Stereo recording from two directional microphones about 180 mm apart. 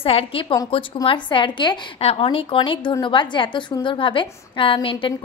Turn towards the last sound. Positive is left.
turn(degrees=30)  # may be behind; listen again after turning